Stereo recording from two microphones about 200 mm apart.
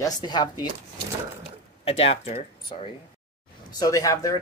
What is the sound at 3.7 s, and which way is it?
Speech, 20° left (ahead or behind).